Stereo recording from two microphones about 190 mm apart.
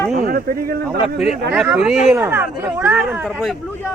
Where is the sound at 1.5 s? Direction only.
5° right (ahead or behind).